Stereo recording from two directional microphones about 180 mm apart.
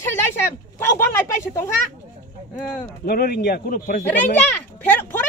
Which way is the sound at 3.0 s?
60° left (ahead or behind).